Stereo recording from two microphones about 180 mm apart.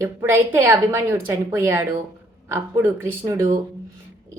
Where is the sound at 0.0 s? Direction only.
15° right (ahead or behind).